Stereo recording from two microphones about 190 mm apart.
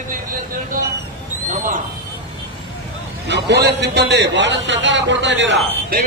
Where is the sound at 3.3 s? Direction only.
65° right (ahead or behind).